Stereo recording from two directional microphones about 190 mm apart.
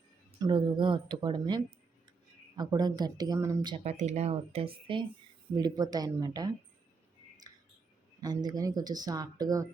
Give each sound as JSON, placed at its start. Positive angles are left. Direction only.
{"t": 0.3, "sound": "speech", "side_deg": -20}
{"t": 3.8, "sound": "speech", "side_deg": -35}
{"t": 5.5, "sound": "speech", "side_deg": -20}
{"t": 7.5, "sound": "a sound", "side_deg": -20}
{"t": 8.2, "sound": "speech", "side_deg": -20}